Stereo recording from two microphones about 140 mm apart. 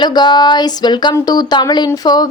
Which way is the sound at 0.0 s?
30° left (ahead or behind).